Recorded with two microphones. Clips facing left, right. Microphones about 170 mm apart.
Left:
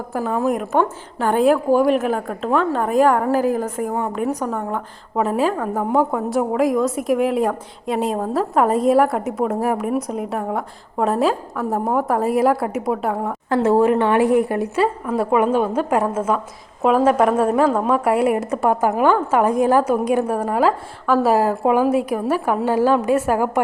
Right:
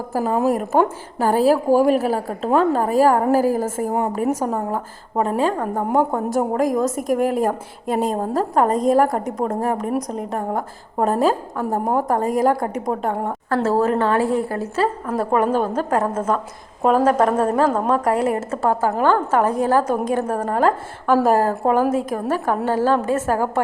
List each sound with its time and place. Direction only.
0.4 s a woman's voice: 5° right (ahead or behind)
1.2 s a woman's voice: 35° right (ahead or behind)
2.9 s a woman's voice: 5° right (ahead or behind)
3.5 s a woman's voice: 40° right (ahead or behind)
5.2 s a woman's voice: 5° left (ahead or behind)
13.5 s a woman's voice: 20° left (ahead or behind)